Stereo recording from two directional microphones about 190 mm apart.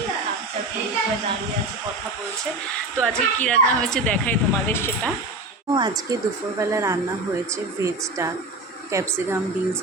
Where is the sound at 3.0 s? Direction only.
5° left (ahead or behind).